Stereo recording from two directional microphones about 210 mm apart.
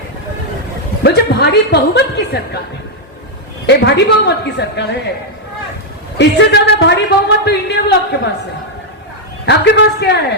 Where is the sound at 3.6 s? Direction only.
55° left (ahead or behind).